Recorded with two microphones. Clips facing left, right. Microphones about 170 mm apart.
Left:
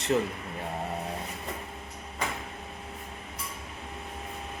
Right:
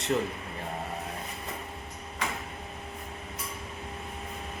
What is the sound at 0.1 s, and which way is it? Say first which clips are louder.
Speech: left 2 dB; 5° left (ahead or behind).